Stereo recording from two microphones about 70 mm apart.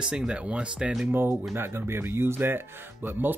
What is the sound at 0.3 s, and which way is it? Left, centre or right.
Speech, centre.